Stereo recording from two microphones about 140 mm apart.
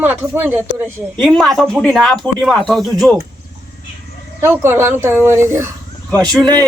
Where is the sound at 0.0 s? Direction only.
15° right (ahead or behind).